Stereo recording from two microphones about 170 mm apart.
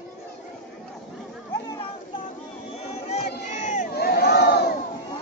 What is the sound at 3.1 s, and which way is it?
Crowd, 45° left (ahead or behind).